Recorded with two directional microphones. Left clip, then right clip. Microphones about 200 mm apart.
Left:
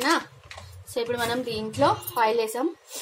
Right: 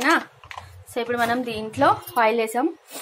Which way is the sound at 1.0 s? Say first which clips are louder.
Right 4 dB; 5° right (ahead or behind).